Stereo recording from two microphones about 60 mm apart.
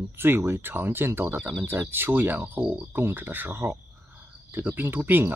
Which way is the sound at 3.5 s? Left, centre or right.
Right.